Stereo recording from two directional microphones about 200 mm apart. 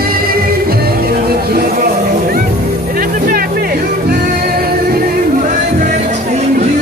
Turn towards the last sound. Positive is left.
turn(degrees=-35)  # may be behind; listen again after turning